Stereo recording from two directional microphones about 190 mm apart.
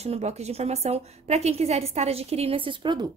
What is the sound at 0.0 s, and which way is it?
A woman's voice, 35° right (ahead or behind).